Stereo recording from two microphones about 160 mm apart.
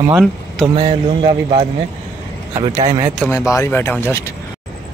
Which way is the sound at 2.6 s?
40° right (ahead or behind).